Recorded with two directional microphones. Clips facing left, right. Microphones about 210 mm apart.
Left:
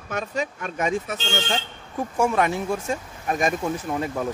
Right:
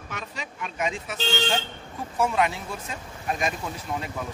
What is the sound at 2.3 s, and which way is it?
Speech, 45° left (ahead or behind).